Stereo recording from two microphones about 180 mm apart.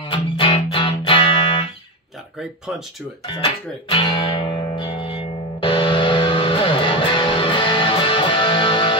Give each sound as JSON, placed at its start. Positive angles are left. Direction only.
{"t": 0.1, "sound": "music", "side_deg": 30}
{"t": 3.3, "sound": "music", "side_deg": 30}